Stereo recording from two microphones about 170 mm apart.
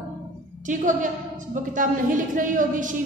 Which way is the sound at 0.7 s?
50° right (ahead or behind).